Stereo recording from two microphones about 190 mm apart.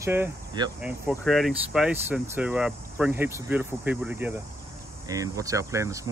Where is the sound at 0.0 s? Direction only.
15° right (ahead or behind).